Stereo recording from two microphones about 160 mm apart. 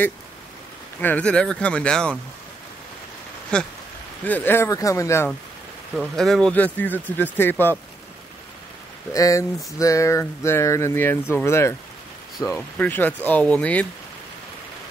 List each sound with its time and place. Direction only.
1.0 s speech: 10° left (ahead or behind)
3.5 s a sound: 5° left (ahead or behind)
4.2 s speech: 10° left (ahead or behind)
5.9 s speech: centre (ahead or behind)
9.1 s speech: 20° left (ahead or behind)